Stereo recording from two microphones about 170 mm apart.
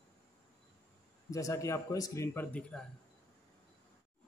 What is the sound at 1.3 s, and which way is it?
Speech, 20° left (ahead or behind).